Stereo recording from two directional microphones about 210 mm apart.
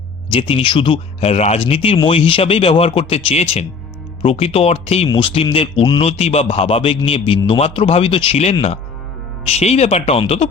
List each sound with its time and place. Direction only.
0.3 s speech: 25° left (ahead or behind)